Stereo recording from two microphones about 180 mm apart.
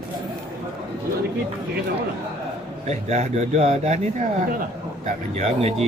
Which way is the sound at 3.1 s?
40° right (ahead or behind).